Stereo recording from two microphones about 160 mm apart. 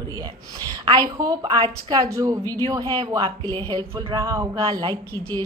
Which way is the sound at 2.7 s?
25° right (ahead or behind).